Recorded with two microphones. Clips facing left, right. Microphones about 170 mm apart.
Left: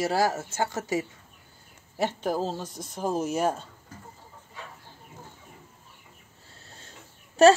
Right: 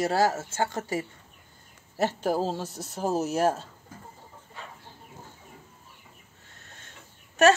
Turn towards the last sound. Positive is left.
turn(degrees=35)  # may be behind; listen again after turning